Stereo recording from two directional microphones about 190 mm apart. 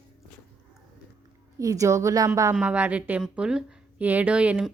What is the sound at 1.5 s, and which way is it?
A woman's voice, 15° right (ahead or behind).